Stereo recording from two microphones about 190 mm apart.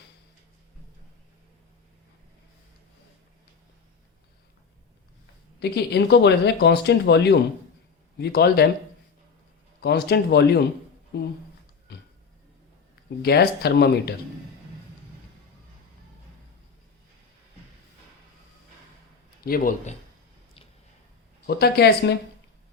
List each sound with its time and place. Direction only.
5.5 s speech: 60° left (ahead or behind)
9.8 s speech: 55° left (ahead or behind)
11.9 s a sound: 60° left (ahead or behind)
13.2 s speech: 55° left (ahead or behind)
19.4 s a man's voice: 50° left (ahead or behind)
21.4 s speech: 55° left (ahead or behind)